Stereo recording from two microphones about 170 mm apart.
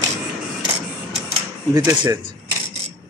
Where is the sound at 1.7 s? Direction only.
20° right (ahead or behind).